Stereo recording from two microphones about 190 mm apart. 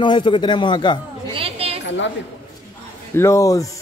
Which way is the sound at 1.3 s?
30° right (ahead or behind).